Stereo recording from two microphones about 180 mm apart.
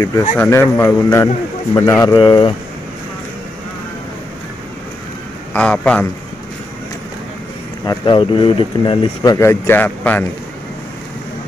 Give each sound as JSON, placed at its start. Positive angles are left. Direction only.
{"t": 0.0, "sound": "a man's voice", "side_deg": 20}
{"t": 2.1, "sound": "speech", "side_deg": 25}
{"t": 5.5, "sound": "a man's voice", "side_deg": 5}
{"t": 7.8, "sound": "speech", "side_deg": 25}